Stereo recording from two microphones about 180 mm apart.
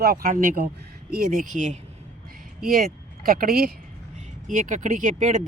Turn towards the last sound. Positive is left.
turn(degrees=-45)  # may be behind; listen again after turning